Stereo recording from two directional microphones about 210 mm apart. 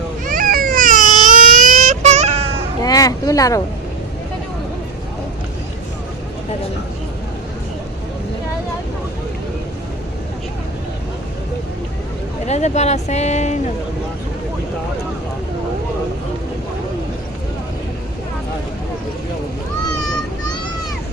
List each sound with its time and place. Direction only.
0.3 s baby cry: 40° right (ahead or behind)
2.8 s a sound: 15° left (ahead or behind)
12.5 s speech: 30° left (ahead or behind)